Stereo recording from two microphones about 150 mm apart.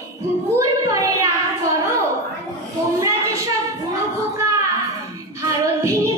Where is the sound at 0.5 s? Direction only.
20° right (ahead or behind).